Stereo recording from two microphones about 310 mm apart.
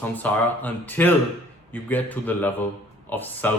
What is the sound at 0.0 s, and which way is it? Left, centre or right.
Speech, centre.